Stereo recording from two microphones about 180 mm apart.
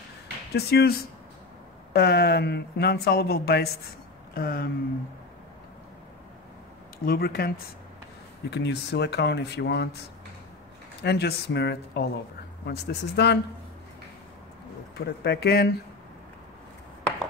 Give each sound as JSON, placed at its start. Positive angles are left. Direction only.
{"t": 0.5, "sound": "speech", "side_deg": 65}
{"t": 2.0, "sound": "speech", "side_deg": 60}
{"t": 7.1, "sound": "speech", "side_deg": 60}
{"t": 8.5, "sound": "speech", "side_deg": 70}
{"t": 11.0, "sound": "speech", "side_deg": 70}
{"t": 15.0, "sound": "speech", "side_deg": 60}